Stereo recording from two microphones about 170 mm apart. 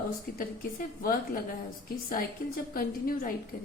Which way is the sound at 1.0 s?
60° left (ahead or behind).